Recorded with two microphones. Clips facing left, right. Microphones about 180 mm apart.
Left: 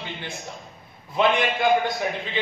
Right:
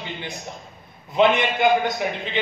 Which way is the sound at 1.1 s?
20° right (ahead or behind).